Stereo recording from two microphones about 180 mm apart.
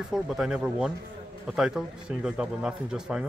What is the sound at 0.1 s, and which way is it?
A man's voice, 5° right (ahead or behind).